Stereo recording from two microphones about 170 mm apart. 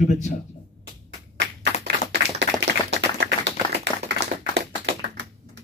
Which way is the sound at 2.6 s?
90° right.